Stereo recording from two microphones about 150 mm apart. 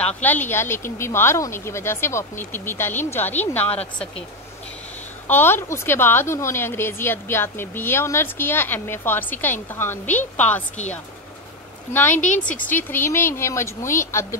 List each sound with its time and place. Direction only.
0.0 s speech: 10° left (ahead or behind)
5.3 s speech: 15° left (ahead or behind)
11.9 s speech: 15° left (ahead or behind)
12.2 s speech: 60° left (ahead or behind)
12.6 s speech: 15° left (ahead or behind)